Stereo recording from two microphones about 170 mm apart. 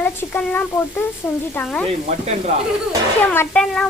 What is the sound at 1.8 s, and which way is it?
Sizzle, 40° right (ahead or behind).